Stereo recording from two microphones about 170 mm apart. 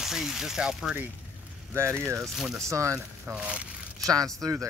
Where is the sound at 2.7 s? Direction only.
15° right (ahead or behind).